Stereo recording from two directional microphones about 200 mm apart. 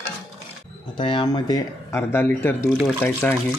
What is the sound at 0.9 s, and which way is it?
Speech, 25° left (ahead or behind).